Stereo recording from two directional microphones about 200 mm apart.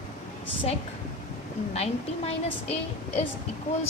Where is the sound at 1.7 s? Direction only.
30° left (ahead or behind).